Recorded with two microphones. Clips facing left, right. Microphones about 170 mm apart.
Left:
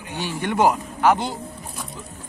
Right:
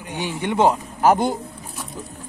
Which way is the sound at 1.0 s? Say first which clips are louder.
Right 4 dB; 45° right (ahead or behind).